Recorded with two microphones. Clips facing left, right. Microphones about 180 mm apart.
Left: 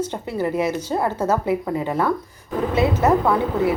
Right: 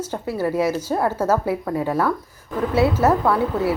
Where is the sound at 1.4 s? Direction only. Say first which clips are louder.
Left 1 dB; 15° left (ahead or behind).